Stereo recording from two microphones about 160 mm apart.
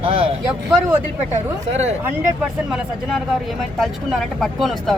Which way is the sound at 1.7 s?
45° right (ahead or behind).